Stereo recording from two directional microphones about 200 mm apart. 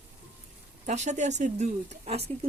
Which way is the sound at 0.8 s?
35° right (ahead or behind).